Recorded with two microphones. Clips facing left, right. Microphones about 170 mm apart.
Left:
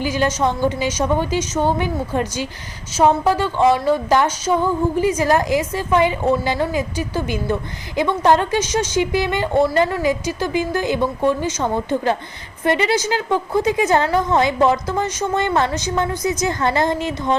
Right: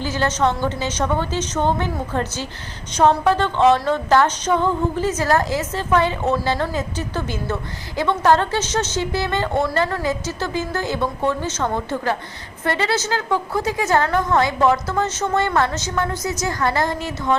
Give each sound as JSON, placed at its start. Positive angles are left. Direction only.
{"t": 0.0, "sound": "a woman's voice", "side_deg": 10}